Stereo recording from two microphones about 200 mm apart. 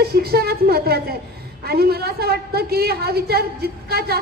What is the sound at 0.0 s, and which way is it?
A woman's voice, 50° right (ahead or behind).